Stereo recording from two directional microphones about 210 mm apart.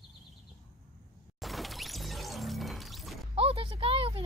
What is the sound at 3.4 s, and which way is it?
Speech, 25° right (ahead or behind).